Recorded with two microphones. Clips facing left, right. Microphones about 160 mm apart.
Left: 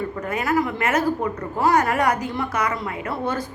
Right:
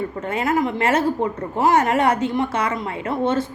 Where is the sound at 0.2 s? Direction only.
25° right (ahead or behind).